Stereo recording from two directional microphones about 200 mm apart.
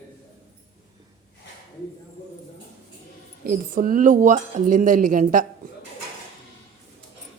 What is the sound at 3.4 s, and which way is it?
Speech, 45° right (ahead or behind).